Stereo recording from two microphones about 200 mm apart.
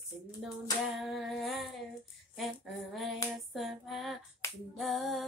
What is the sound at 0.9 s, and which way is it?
Speech, centre (ahead or behind).